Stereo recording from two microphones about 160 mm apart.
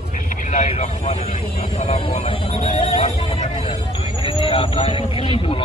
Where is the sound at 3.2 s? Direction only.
35° left (ahead or behind).